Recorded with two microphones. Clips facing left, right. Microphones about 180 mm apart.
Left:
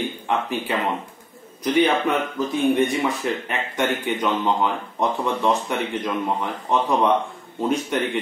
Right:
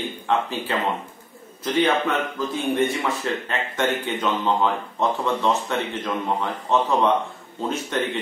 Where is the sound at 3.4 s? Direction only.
15° left (ahead or behind).